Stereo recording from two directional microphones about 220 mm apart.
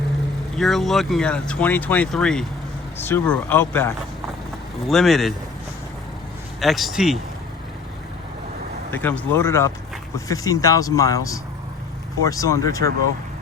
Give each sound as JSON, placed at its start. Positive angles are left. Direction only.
{"t": 0.5, "sound": "speech", "side_deg": 0}
{"t": 6.6, "sound": "speech", "side_deg": 0}
{"t": 8.9, "sound": "speech", "side_deg": 10}